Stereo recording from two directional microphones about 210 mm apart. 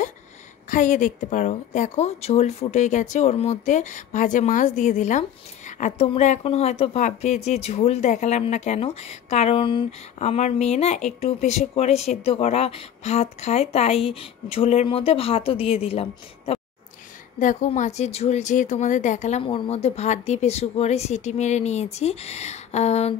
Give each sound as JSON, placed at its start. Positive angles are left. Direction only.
{"t": 0.7, "sound": "a woman's voice", "side_deg": 40}